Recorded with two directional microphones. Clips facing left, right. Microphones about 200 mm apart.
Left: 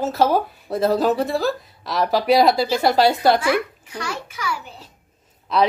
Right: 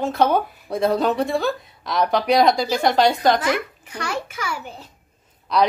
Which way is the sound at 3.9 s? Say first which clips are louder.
Right 2 dB; 55° right (ahead or behind).